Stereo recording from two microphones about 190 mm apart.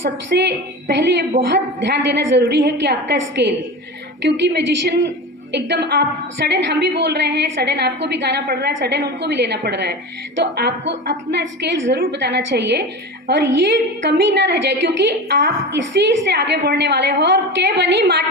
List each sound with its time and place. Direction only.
0.0 s a woman's voice: 65° right (ahead or behind)